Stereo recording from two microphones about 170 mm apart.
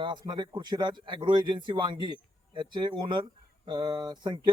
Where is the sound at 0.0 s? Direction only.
25° right (ahead or behind).